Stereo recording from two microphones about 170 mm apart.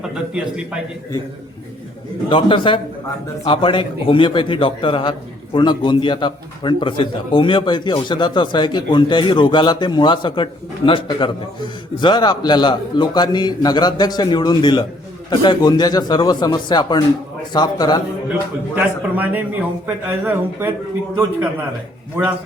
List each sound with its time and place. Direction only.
0.1 s a man's voice: 5° right (ahead or behind)
2.3 s a man's voice: 30° left (ahead or behind)
18.7 s a man's voice: 10° right (ahead or behind)
22.1 s a man's voice: 10° right (ahead or behind)